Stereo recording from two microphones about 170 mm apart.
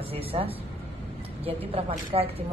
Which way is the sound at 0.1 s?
35° right (ahead or behind).